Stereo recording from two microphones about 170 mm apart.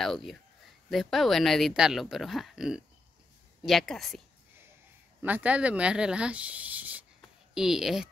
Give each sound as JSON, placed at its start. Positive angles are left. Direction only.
{"t": 0.0, "sound": "speech", "side_deg": 0}
{"t": 5.2, "sound": "speech", "side_deg": -10}